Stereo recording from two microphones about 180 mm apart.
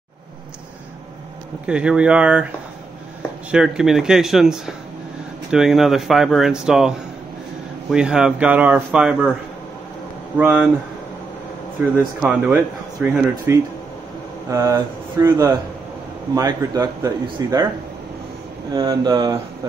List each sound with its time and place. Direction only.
1.7 s speech: 5° right (ahead or behind)
3.5 s speech: 5° right (ahead or behind)
10.3 s speech: 10° right (ahead or behind)
12.2 s speech: 10° right (ahead or behind)
18.7 s speech: 20° right (ahead or behind)